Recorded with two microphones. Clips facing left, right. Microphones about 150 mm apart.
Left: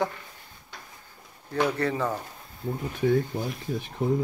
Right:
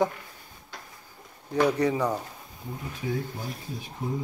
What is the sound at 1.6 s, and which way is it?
Speech, 15° right (ahead or behind).